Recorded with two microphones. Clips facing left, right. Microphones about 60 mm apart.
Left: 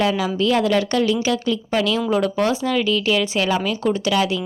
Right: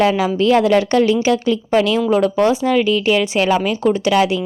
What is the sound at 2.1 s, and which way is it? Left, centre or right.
Speech, centre.